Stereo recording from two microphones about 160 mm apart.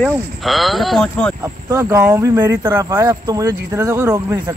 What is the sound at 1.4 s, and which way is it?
Speech, 20° right (ahead or behind).